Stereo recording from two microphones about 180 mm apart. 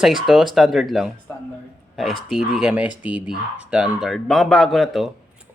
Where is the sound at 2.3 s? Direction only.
5° right (ahead or behind).